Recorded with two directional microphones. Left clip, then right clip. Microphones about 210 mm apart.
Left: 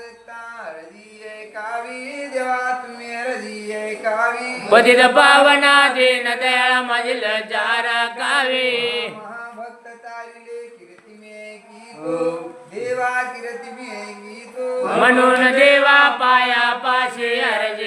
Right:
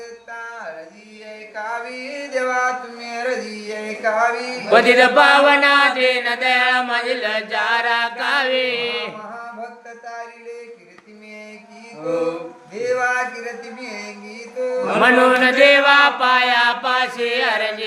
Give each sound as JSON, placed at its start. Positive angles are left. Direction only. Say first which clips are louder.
{"t": 1.5, "sound": "a sound", "louder": "right 1 dB", "side_deg": -30}
{"t": 4.7, "sound": "chant", "louder": "left 1 dB", "side_deg": 5}
{"t": 12.8, "sound": "speech", "louder": "right 2 dB", "side_deg": -30}
{"t": 15.0, "sound": "chant", "louder": "even", "side_deg": -5}